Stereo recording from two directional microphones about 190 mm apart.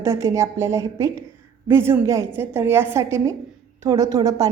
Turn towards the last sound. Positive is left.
turn(degrees=-20)  # may be behind; listen again after turning